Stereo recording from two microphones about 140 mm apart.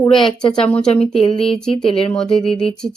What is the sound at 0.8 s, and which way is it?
Speech, 5° left (ahead or behind).